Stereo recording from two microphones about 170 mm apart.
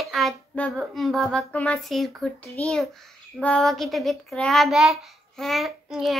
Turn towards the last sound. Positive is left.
turn(degrees=0)  # may be behind; listen again after turning